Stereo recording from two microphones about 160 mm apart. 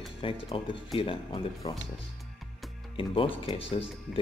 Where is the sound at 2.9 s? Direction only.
35° left (ahead or behind).